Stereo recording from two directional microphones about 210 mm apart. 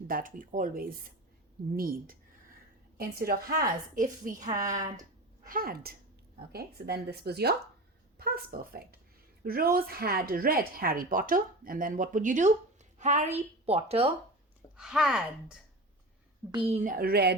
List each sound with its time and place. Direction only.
0.1 s a woman's voice: 40° right (ahead or behind)
5.5 s a woman's voice: 45° right (ahead or behind); by 14.1 s 30° right (ahead or behind)
14.8 s speech: centre (ahead or behind)
16.5 s a woman's voice: 25° right (ahead or behind); by 17.3 s 50° right (ahead or behind)